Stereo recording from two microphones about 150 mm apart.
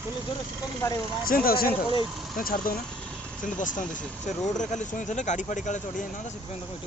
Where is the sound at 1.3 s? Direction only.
75° left (ahead or behind).